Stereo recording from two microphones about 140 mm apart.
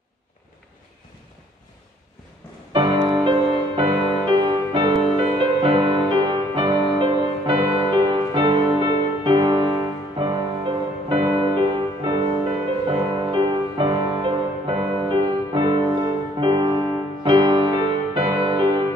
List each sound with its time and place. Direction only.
2.7 s music: 35° right (ahead or behind)